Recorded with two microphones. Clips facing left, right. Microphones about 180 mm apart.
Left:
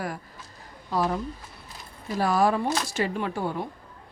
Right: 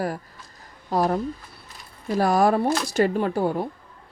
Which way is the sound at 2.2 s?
45° right (ahead or behind).